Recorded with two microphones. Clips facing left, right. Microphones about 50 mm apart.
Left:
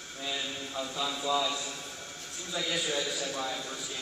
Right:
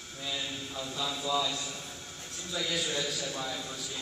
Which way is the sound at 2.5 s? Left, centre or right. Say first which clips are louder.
Left 1 dB; centre.